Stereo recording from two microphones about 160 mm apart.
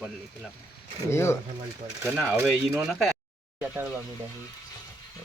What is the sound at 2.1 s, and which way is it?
Speech, 10° right (ahead or behind).